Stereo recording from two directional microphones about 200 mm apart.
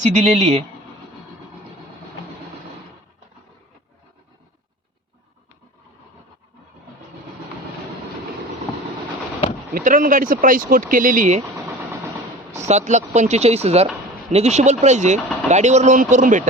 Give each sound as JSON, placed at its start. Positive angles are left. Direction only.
{"t": 0.0, "sound": "speech", "side_deg": -35}
{"t": 9.7, "sound": "speech", "side_deg": -45}
{"t": 12.6, "sound": "speech", "side_deg": -35}